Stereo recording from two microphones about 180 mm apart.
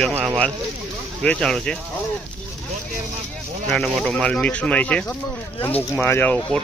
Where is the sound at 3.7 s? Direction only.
5° left (ahead or behind).